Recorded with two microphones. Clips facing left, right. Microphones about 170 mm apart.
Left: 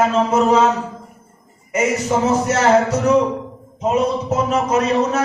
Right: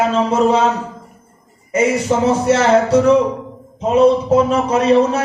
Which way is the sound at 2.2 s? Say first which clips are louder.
Right 2 dB; 30° right (ahead or behind).